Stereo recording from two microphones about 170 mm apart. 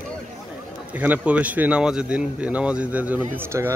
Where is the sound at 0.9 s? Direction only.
10° right (ahead or behind).